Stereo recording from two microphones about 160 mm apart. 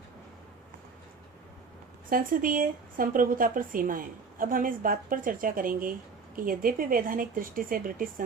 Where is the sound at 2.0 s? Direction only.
60° right (ahead or behind).